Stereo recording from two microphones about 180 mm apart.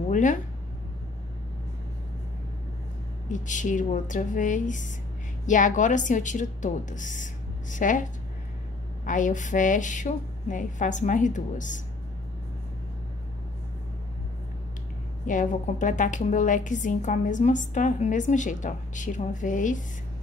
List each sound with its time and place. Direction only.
0.1 s speech: 45° left (ahead or behind)
3.3 s a woman's voice: 45° left (ahead or behind)
15.2 s a woman's voice: 45° left (ahead or behind)